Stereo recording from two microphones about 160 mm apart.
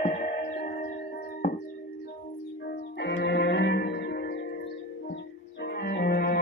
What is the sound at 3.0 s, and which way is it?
Music, 90° left.